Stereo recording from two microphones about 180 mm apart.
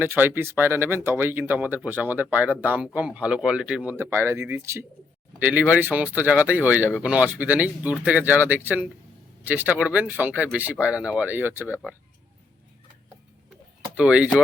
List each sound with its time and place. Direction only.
0.0 s speech: 10° right (ahead or behind)
13.9 s speech: 5° right (ahead or behind)